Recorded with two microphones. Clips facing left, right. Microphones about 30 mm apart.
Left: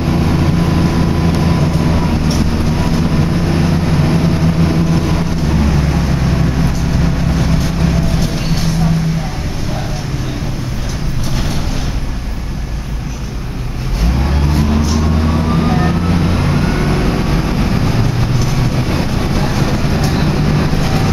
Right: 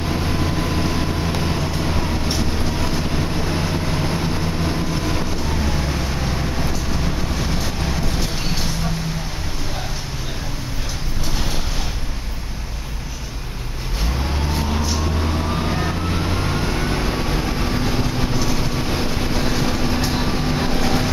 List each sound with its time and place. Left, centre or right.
0.1 s vehicle: left
15.1 s vehicle: left